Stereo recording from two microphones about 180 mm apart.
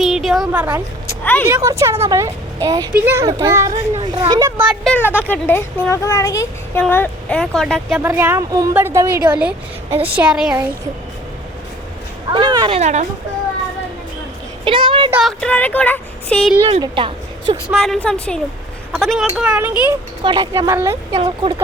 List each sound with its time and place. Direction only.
0.0 s a sound: centre (ahead or behind)
1.2 s speech: 10° left (ahead or behind)
1.5 s a woman's voice: 15° right (ahead or behind)
4.6 s speech: centre (ahead or behind)
8.0 s a woman's voice: 10° right (ahead or behind)
12.3 s a woman's voice: 25° right (ahead or behind); by 13.1 s 40° right (ahead or behind)
14.6 s speech: 30° right (ahead or behind)
15.1 s speech: centre (ahead or behind)
16.8 s a woman's voice: 25° right (ahead or behind)
17.7 s a woman's voice: centre (ahead or behind)
20.2 s a woman's voice: 25° right (ahead or behind)
21.2 s a woman's voice: 30° right (ahead or behind)